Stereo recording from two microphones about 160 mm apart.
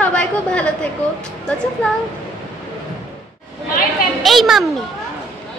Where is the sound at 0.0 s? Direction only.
10° left (ahead or behind).